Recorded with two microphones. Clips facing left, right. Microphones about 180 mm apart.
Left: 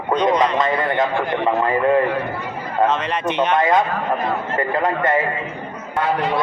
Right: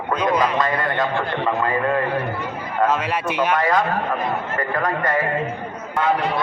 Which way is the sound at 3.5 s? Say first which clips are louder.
Left 2 dB; 25° left (ahead or behind).